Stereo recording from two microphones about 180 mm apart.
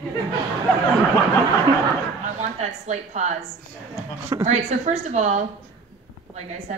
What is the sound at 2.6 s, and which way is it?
Speech, 40° right (ahead or behind).